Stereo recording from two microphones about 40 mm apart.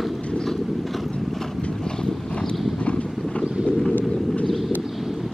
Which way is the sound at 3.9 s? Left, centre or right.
Left.